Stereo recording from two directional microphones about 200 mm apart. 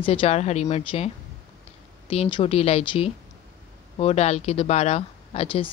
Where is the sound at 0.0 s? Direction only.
25° left (ahead or behind).